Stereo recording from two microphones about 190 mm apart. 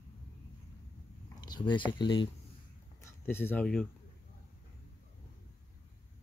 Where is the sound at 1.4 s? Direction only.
25° left (ahead or behind).